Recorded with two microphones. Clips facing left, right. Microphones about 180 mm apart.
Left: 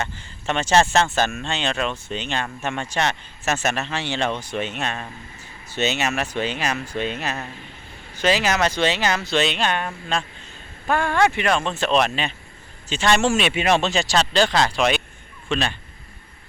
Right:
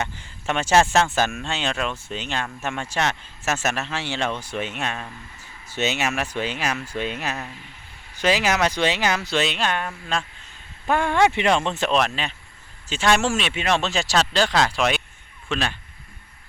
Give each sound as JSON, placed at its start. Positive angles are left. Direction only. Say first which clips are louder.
{"t": 0.0, "sound": "speech", "louder": "even", "side_deg": -10}
{"t": 10.8, "sound": "speech", "louder": "even", "side_deg": -20}
{"t": 11.9, "sound": "speech", "louder": "left 4 dB", "side_deg": 0}
{"t": 13.8, "sound": "speech", "louder": "left 1 dB", "side_deg": -5}